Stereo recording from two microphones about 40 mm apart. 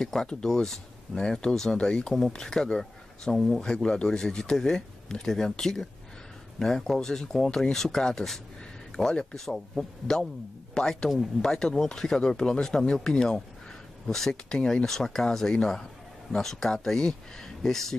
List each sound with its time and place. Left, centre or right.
0.0 s speech: centre
3.3 s speech: centre
3.6 s speech: centre